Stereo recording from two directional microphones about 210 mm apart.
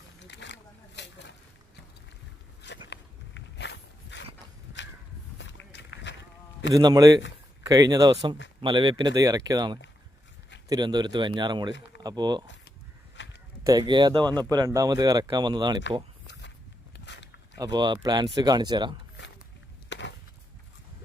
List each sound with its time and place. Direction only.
0.2 s a sound: 55° left (ahead or behind)
2.6 s walk: 55° left (ahead or behind)
5.4 s run: 55° left (ahead or behind)
6.7 s speech: 15° right (ahead or behind)
13.1 s a sound: 60° left (ahead or behind)
13.7 s speech: 20° right (ahead or behind)
16.2 s walk: 55° left (ahead or behind)
17.1 s a sound: 55° left (ahead or behind)
17.6 s speech: 20° right (ahead or behind)
19.9 s chop: 60° left (ahead or behind)